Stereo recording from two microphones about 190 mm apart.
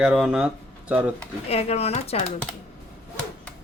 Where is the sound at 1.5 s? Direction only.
35° left (ahead or behind).